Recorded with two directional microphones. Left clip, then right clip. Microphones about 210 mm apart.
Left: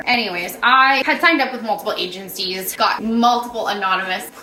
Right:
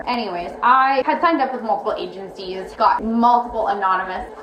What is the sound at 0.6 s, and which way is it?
Speech, 20° left (ahead or behind).